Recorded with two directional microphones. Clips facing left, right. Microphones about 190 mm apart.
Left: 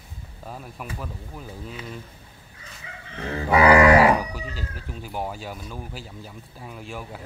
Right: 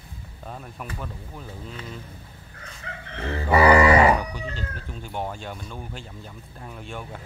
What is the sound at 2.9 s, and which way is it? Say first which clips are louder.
Chicken: right 5 dB; 60° right (ahead or behind).